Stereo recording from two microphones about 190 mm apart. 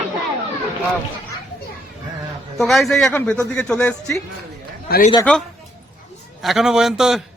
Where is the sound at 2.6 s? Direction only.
Centre (ahead or behind).